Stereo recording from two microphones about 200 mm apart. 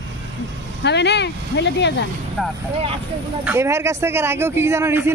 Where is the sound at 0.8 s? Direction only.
60° left (ahead or behind).